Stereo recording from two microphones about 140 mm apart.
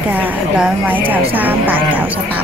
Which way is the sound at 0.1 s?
10° right (ahead or behind).